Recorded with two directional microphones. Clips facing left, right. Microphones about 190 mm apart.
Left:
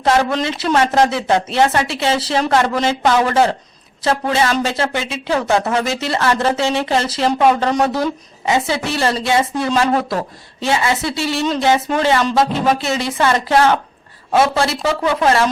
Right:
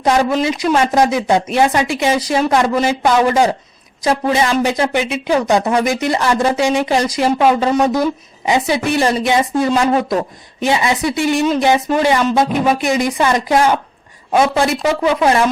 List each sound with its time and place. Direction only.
0.0 s speech: 15° right (ahead or behind)
8.4 s speech: 15° right (ahead or behind)